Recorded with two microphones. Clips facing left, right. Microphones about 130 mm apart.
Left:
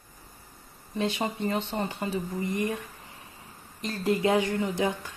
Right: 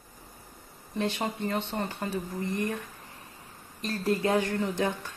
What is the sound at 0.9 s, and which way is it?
Speech, 10° left (ahead or behind).